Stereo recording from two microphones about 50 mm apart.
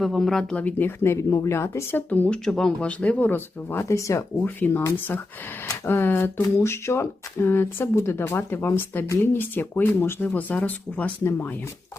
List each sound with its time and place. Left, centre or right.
0.0 s speech: centre
0.8 s speech: left
2.0 s speech: left
2.3 s speech: centre
2.8 s speech: left
3.2 s speech: left
3.8 s speech: left
4.4 s speech: left
5.8 s speech: left
6.6 s speech: left
10.2 s speech: left
11.2 s speech: left